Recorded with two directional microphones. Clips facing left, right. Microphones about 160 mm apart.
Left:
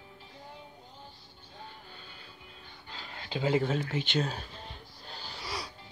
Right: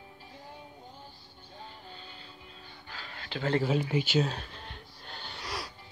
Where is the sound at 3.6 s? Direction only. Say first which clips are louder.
Right 3 dB; 15° right (ahead or behind).